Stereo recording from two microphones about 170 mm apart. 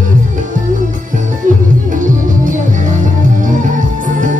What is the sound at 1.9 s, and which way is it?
Music, 50° right (ahead or behind).